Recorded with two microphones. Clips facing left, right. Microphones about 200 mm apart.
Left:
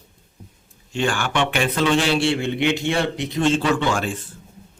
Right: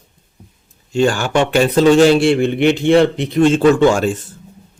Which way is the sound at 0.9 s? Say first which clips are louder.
Right 8 dB; 40° right (ahead or behind).